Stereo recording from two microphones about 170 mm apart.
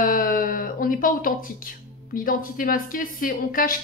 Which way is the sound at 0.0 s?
55° left (ahead or behind).